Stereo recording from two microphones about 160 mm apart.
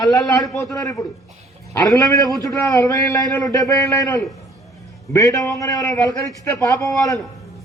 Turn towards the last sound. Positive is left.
turn(degrees=20)  # may be behind; listen again after turning